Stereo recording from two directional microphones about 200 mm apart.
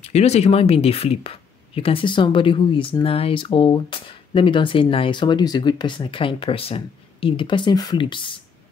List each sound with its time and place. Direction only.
0.0 s speech: 30° left (ahead or behind)